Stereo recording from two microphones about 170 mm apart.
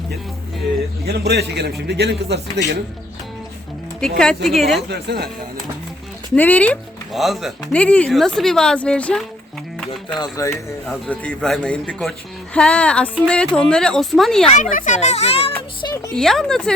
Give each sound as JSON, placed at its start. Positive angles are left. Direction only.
{"t": 1.0, "sound": "a man's voice", "side_deg": -70}
{"t": 4.0, "sound": "speech", "side_deg": 5}
{"t": 4.9, "sound": "a man's voice", "side_deg": -75}
{"t": 6.3, "sound": "speech", "side_deg": 10}
{"t": 10.2, "sound": "speech", "side_deg": 20}
{"t": 10.5, "sound": "speech", "side_deg": 0}
{"t": 14.4, "sound": "speech", "side_deg": 45}
{"t": 16.1, "sound": "speech", "side_deg": 0}